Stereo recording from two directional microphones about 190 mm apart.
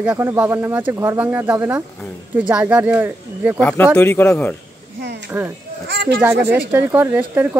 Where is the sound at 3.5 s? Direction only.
10° left (ahead or behind).